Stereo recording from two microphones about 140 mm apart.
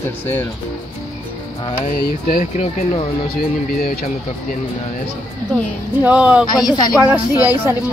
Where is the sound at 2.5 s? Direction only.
50° left (ahead or behind).